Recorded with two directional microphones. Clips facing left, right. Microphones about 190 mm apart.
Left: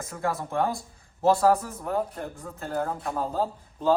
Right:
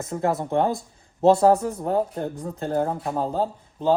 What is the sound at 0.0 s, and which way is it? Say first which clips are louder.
A man's voice: right 6 dB; 25° right (ahead or behind).